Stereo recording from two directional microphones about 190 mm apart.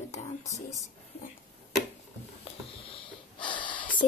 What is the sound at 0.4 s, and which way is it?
Speech, 15° left (ahead or behind).